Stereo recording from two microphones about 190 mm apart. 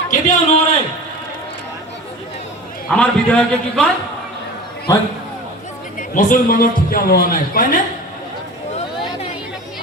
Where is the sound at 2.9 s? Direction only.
5° left (ahead or behind).